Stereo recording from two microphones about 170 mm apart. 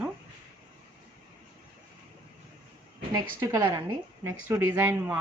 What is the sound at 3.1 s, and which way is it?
A woman's voice, 25° right (ahead or behind).